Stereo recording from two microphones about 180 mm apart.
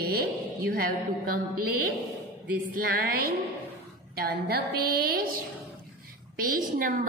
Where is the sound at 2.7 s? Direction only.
55° right (ahead or behind).